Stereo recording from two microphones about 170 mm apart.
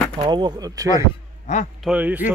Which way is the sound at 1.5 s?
45° left (ahead or behind).